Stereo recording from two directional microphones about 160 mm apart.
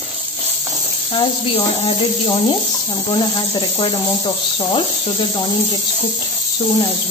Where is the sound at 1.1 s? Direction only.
35° left (ahead or behind).